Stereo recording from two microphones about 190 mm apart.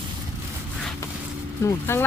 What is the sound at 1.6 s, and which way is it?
Speech, 15° left (ahead or behind).